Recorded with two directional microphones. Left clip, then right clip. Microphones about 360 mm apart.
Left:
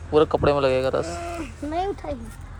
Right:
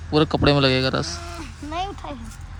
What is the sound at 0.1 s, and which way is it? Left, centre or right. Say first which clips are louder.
A man's voice: even; centre.